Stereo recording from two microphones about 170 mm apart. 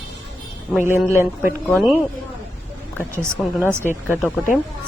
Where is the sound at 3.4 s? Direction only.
5° right (ahead or behind).